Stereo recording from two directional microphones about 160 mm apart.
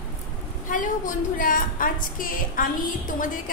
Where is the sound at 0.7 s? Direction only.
55° left (ahead or behind).